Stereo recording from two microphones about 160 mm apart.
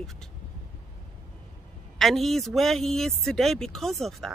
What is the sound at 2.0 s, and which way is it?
Speech, centre (ahead or behind).